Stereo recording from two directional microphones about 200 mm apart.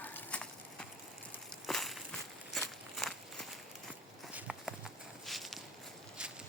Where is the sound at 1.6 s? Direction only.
Centre (ahead or behind).